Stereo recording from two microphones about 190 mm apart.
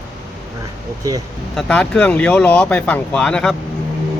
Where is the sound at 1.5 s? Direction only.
5° left (ahead or behind).